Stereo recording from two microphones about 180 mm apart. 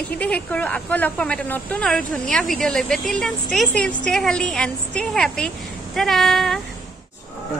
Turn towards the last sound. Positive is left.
turn(degrees=0)  # may be behind; listen again after turning